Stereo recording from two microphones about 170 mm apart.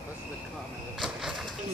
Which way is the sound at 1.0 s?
Centre (ahead or behind).